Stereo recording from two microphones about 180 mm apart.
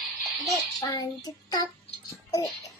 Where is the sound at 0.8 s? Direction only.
20° left (ahead or behind).